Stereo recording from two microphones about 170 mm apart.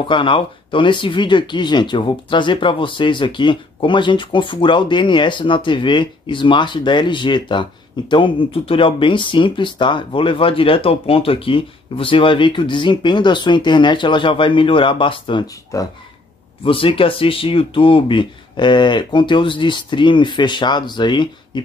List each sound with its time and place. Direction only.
0.0 s speech: 30° left (ahead or behind)